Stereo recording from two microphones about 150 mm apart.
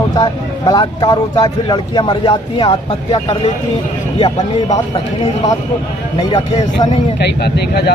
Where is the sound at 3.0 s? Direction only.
40° left (ahead or behind).